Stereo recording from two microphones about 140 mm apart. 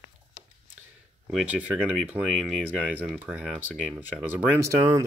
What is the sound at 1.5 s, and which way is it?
Speech, 10° right (ahead or behind).